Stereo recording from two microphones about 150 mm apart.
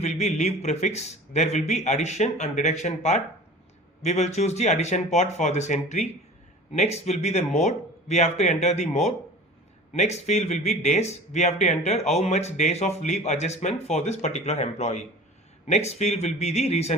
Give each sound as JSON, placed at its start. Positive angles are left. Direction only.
{"t": 0.0, "sound": "speech", "side_deg": 50}